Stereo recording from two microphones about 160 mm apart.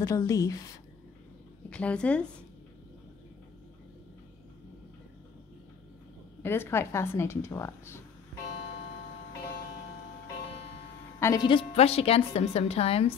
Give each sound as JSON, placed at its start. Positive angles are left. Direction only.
{"t": 0.0, "sound": "a woman's voice", "side_deg": 20}
{"t": 1.7, "sound": "a woman's voice", "side_deg": 5}
{"t": 6.4, "sound": "a woman's voice", "side_deg": 15}
{"t": 11.1, "sound": "speech", "side_deg": 15}
{"t": 11.4, "sound": "a woman's voice", "side_deg": 35}